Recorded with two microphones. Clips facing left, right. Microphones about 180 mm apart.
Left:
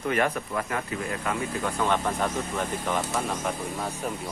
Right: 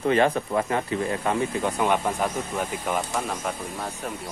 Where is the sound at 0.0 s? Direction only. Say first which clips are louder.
Right 5 dB; 30° right (ahead or behind); by 3.9 s centre (ahead or behind).